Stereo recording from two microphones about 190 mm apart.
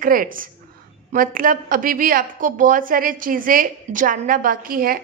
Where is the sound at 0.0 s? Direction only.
45° right (ahead or behind).